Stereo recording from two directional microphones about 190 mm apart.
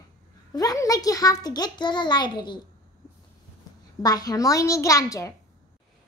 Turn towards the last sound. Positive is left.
turn(degrees=15)  # may be behind; listen again after turning